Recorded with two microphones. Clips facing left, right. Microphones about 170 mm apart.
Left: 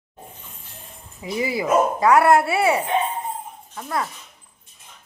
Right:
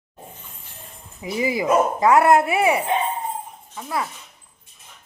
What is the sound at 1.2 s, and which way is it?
Speech, 20° right (ahead or behind).